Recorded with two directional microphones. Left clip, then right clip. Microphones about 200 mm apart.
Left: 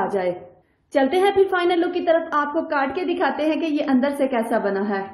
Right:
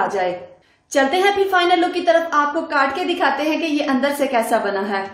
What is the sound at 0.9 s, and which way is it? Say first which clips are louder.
A woman's voice: right 2 dB; 25° left (ahead or behind).